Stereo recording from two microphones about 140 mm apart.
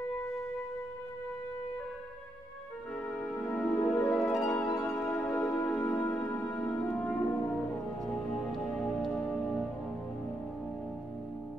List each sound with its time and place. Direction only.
3.2 s music: 10° left (ahead or behind)
4.6 s music: 25° left (ahead or behind)
5.0 s music: 5° left (ahead or behind)